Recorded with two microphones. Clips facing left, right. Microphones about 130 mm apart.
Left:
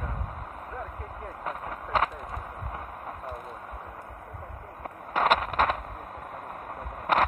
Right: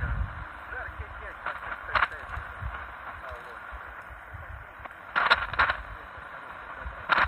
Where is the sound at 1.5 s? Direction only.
40° left (ahead or behind).